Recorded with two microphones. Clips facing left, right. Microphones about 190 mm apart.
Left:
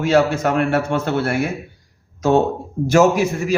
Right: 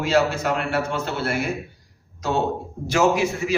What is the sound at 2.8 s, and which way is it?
Speech, 45° left (ahead or behind).